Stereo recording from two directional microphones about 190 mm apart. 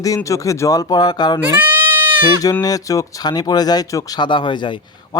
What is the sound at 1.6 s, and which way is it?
Goat, 10° right (ahead or behind).